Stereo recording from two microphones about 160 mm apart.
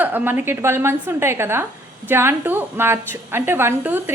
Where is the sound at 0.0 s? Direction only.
10° right (ahead or behind).